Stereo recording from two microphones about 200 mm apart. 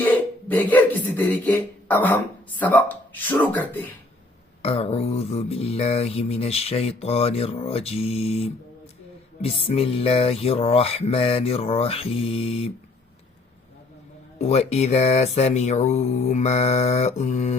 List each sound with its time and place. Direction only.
0.0 s beatboxing: 10° left (ahead or behind)
2.6 s speech: 10° left (ahead or behind)
4.6 s mantra: 30° left (ahead or behind)
9.4 s music: 30° left (ahead or behind)
14.3 s mantra: 35° left (ahead or behind)